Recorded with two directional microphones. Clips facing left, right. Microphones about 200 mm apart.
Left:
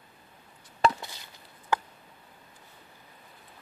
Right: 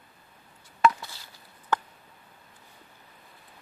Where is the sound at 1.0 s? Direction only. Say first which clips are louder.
Left 1 dB; 20° left (ahead or behind).